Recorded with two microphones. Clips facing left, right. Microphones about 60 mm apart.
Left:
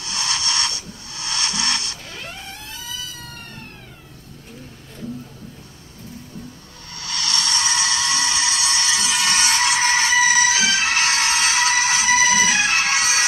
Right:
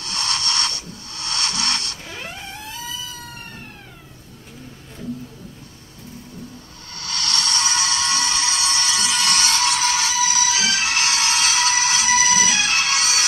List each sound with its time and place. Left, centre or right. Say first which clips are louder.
0.1 s music: even; centre
7.0 s a sound: even; left
7.4 s music: even; left